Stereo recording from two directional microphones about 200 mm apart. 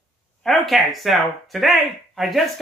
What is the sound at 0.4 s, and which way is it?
Speech, centre (ahead or behind).